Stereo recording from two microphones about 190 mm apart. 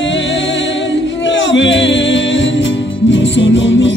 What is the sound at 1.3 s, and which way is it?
Music, 75° left (ahead or behind).